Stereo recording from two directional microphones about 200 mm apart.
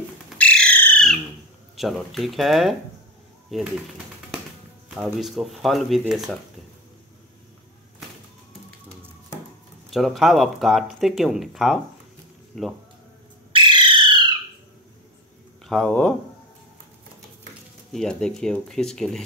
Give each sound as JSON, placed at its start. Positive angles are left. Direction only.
{"t": 0.4, "sound": "bird", "side_deg": 5}
{"t": 1.8, "sound": "speech", "side_deg": 0}
{"t": 4.8, "sound": "speech", "side_deg": 0}
{"t": 9.8, "sound": "speech", "side_deg": 0}
{"t": 13.5, "sound": "a sound", "side_deg": -25}
{"t": 15.6, "sound": "speech", "side_deg": 0}
{"t": 17.9, "sound": "speech", "side_deg": 5}